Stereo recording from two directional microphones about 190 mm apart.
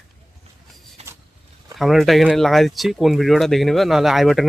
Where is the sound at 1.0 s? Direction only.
35° right (ahead or behind).